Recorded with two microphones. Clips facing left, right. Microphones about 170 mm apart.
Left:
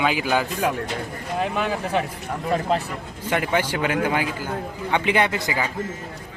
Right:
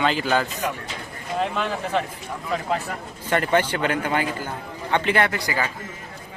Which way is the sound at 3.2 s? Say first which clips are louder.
Right 2 dB; 10° left (ahead or behind).